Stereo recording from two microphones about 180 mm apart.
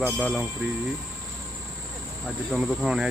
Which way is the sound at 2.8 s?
5° right (ahead or behind).